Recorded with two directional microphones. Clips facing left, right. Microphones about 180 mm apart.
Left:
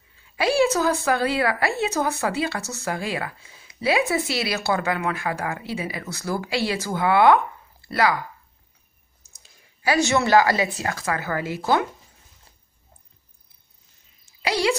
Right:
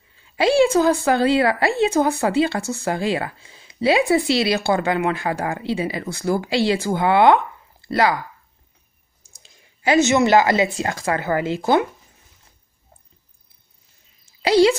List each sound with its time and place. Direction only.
0.4 s speech: 30° right (ahead or behind)
9.3 s a sound: 25° right (ahead or behind)
10.8 s speech: 30° right (ahead or behind)
14.4 s a woman's voice: 30° right (ahead or behind)